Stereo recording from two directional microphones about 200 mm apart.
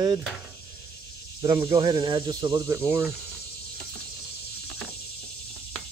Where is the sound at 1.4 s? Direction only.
25° right (ahead or behind).